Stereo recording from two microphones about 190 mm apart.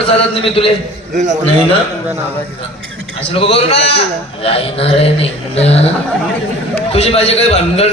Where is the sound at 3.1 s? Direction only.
30° left (ahead or behind).